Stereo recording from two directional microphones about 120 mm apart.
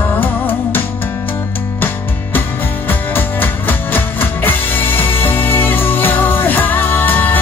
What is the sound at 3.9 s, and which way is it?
Music, 15° left (ahead or behind).